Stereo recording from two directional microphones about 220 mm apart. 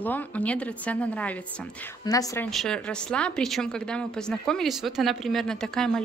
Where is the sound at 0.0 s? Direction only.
5° left (ahead or behind).